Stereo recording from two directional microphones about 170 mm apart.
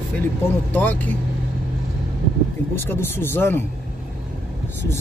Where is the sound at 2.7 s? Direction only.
15° left (ahead or behind).